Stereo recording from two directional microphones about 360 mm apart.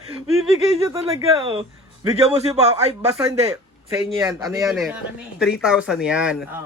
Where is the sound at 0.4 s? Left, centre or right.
Centre.